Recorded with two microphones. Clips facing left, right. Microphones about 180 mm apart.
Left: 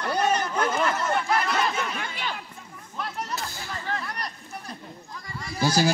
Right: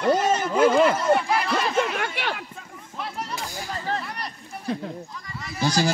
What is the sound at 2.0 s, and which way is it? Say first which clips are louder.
Chatter: right 5 dB; 70° right (ahead or behind).